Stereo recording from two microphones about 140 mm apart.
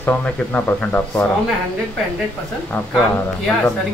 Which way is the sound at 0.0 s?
10° left (ahead or behind).